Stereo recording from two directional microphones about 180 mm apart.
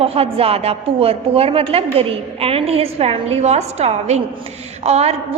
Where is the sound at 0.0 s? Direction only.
30° right (ahead or behind).